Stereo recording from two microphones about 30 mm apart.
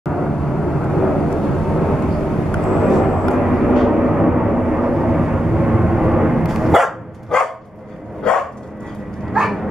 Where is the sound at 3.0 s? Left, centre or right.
Centre.